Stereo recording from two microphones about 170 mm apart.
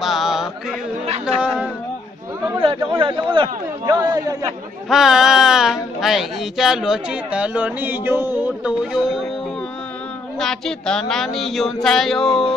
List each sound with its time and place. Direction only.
0.0 s mantra: centre (ahead or behind)
1.2 s chatter: 5° right (ahead or behind)
3.0 s a man's voice: 30° right (ahead or behind)
4.8 s a woman's voice: centre (ahead or behind)
10.4 s a woman's voice: 5° left (ahead or behind)